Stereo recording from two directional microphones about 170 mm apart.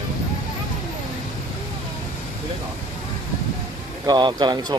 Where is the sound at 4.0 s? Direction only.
25° right (ahead or behind).